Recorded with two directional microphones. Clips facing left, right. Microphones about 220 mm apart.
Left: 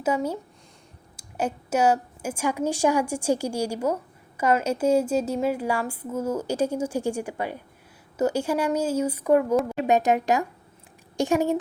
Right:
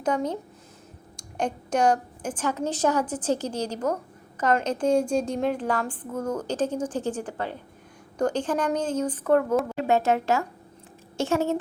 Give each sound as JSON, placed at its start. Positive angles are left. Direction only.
{"t": 0.0, "sound": "a woman's voice", "side_deg": 5}